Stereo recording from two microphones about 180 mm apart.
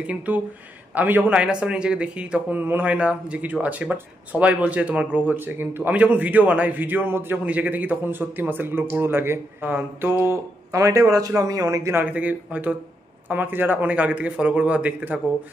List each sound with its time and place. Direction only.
0.0 s speech: 5° right (ahead or behind)